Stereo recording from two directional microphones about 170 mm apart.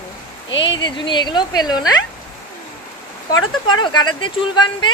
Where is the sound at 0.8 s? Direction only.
30° left (ahead or behind).